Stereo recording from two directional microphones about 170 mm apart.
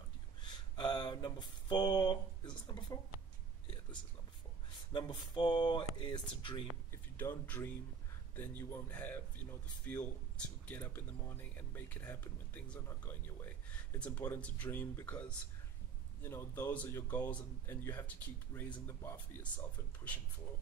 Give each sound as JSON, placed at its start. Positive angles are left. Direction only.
{"t": 0.4, "sound": "a sound", "side_deg": 25}
{"t": 4.6, "sound": "speech", "side_deg": 25}
{"t": 6.9, "sound": "speech", "side_deg": 10}